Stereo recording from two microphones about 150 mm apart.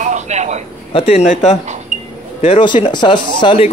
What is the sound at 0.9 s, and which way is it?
Speech, 45° left (ahead or behind).